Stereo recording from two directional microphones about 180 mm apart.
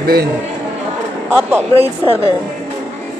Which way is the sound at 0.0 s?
60° right (ahead or behind).